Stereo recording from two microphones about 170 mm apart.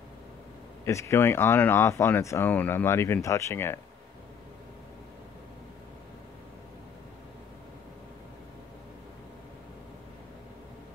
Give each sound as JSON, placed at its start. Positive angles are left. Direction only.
{"t": 0.8, "sound": "speech", "side_deg": 15}